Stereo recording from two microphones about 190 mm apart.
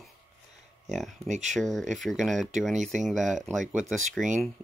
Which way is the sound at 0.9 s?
Centre (ahead or behind).